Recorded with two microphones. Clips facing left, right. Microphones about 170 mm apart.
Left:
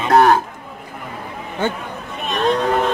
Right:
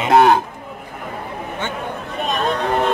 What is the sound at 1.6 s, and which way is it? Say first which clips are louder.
Speech: left 8 dB; 35° left (ahead or behind).